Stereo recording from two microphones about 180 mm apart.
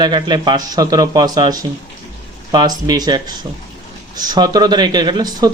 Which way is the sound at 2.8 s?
20° right (ahead or behind).